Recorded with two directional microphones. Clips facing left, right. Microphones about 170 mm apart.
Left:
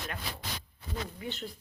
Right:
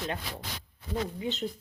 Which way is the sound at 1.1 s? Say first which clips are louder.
Right 6 dB; 20° right (ahead or behind).